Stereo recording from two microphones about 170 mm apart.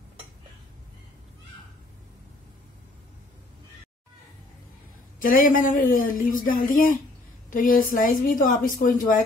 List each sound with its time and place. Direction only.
5.2 s speech: 55° left (ahead or behind)